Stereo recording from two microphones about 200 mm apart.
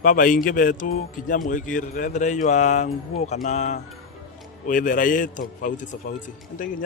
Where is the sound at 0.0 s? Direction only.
45° left (ahead or behind).